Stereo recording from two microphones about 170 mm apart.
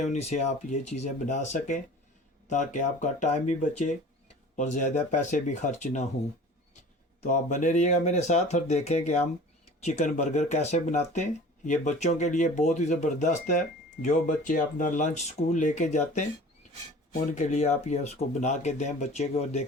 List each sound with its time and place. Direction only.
0.0 s speech: 40° left (ahead or behind)
7.3 s speech: 50° left (ahead or behind)
17.3 s speech: 45° left (ahead or behind)